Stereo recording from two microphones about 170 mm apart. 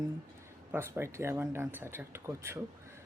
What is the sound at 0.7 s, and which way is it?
Speech, 15° right (ahead or behind).